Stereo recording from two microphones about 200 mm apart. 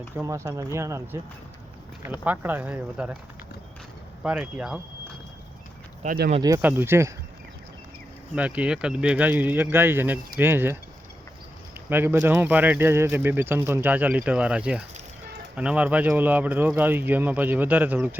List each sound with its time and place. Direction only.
0.2 s speech: 15° right (ahead or behind)
2.2 s speech: 10° right (ahead or behind)
4.2 s speech: 5° right (ahead or behind)
6.0 s speech: 45° right (ahead or behind)
6.4 s speech: 15° right (ahead or behind)
8.4 s speech: 5° right (ahead or behind)
11.9 s speech: 10° right (ahead or behind)